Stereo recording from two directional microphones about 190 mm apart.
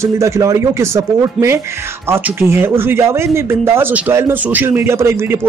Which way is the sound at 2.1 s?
10° right (ahead or behind).